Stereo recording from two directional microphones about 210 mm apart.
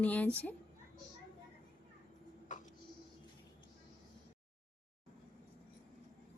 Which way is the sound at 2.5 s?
35° left (ahead or behind).